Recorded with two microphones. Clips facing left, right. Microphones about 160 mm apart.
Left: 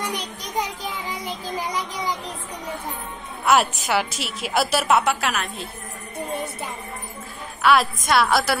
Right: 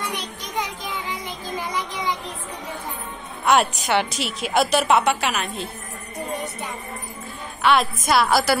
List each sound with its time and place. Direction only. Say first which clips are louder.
0.1 s child singing: left 1 dB; 40° left (ahead or behind)
1.6 s music: right 1 dB; 40° left (ahead or behind)
3.4 s a woman's voice: even; centre (ahead or behind)
7.6 s a woman's voice: even; centre (ahead or behind)